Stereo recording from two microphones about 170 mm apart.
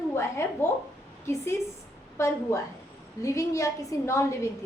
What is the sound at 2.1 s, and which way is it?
A woman's voice, 15° left (ahead or behind).